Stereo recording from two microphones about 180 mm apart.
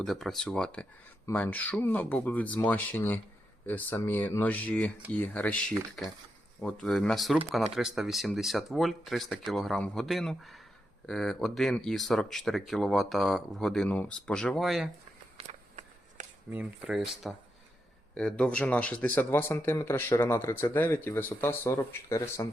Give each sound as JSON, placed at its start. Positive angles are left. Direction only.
{"t": 0.0, "sound": "speech", "side_deg": 0}
{"t": 15.4, "sound": "a sound", "side_deg": -40}
{"t": 16.5, "sound": "speech", "side_deg": -10}